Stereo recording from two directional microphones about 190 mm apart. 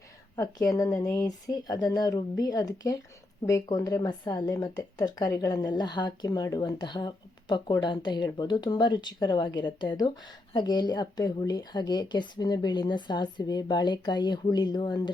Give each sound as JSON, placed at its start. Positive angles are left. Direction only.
{"t": 0.3, "sound": "speech", "side_deg": 20}